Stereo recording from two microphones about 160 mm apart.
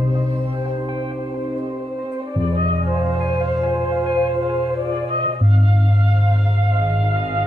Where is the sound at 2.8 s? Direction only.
35° right (ahead or behind).